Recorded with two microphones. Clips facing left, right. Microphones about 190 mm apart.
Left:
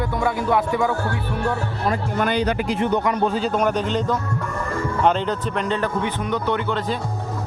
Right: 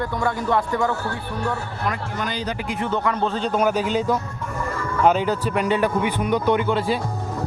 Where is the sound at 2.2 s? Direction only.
60° left (ahead or behind).